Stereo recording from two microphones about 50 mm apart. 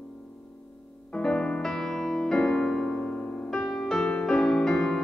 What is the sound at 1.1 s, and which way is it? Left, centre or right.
Music, centre.